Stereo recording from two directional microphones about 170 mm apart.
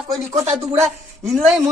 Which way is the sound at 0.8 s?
Centre (ahead or behind).